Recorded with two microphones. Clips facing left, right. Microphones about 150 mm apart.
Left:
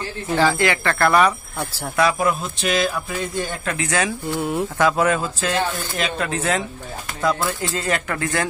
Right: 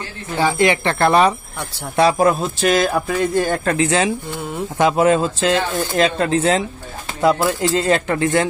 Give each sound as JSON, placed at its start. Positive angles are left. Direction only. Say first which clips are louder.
{"t": 0.4, "sound": "speech", "louder": "right 3 dB", "side_deg": -15}
{"t": 2.2, "sound": "speech", "louder": "right 6 dB", "side_deg": -45}
{"t": 3.7, "sound": "speech", "louder": "right 4 dB", "side_deg": -25}
{"t": 4.3, "sound": "speech", "louder": "left 3 dB", "side_deg": 10}
{"t": 4.7, "sound": "speech", "louder": "right 5 dB", "side_deg": -20}